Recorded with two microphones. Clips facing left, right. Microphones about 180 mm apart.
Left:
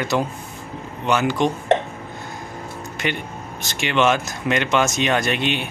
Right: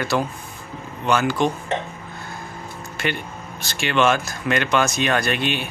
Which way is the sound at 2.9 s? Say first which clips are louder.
Even; 20° left (ahead or behind).